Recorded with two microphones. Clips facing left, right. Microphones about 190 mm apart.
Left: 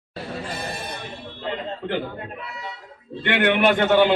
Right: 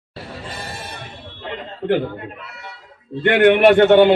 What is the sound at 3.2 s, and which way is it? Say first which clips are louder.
Speech: right 7 dB; 50° right (ahead or behind).